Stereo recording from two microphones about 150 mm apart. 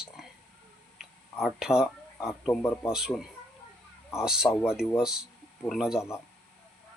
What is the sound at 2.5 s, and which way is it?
Speech, 10° left (ahead or behind).